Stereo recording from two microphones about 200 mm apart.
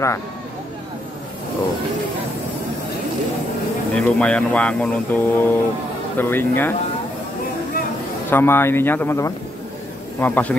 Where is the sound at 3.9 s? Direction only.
5° left (ahead or behind).